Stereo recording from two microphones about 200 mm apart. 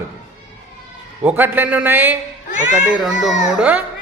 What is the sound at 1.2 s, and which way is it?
A man's voice, 10° right (ahead or behind).